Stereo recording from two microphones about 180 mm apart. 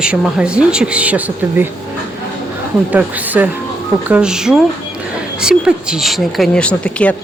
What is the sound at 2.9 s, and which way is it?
Speech, 10° right (ahead or behind).